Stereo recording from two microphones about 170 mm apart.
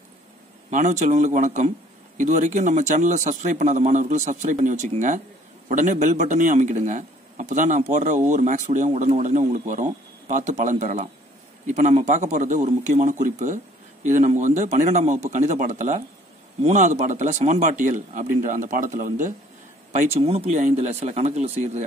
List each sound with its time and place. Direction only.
0.7 s speech: 45° right (ahead or behind)
20.2 s speech: 35° right (ahead or behind)